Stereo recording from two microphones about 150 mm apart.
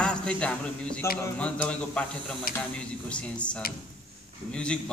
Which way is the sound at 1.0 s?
20° left (ahead or behind).